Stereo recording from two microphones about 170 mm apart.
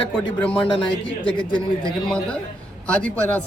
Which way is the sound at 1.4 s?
30° left (ahead or behind).